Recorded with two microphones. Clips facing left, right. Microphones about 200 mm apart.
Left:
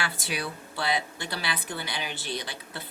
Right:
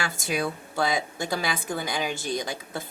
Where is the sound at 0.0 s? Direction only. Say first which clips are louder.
Right 5 dB; 45° right (ahead or behind).